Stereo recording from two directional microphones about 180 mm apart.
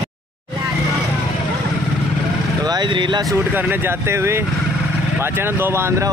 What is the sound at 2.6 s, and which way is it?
Speech, 25° right (ahead or behind).